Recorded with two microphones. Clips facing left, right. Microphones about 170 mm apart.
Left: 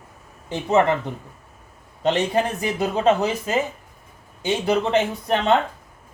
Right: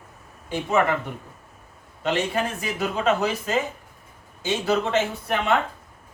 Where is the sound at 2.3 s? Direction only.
35° left (ahead or behind).